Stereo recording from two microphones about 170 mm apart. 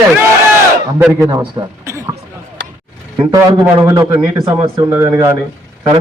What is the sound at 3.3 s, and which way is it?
A man's voice, 15° right (ahead or behind).